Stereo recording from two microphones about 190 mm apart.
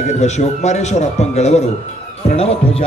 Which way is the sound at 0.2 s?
35° left (ahead or behind).